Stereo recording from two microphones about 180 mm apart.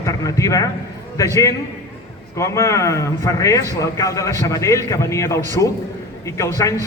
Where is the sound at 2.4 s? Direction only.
15° left (ahead or behind).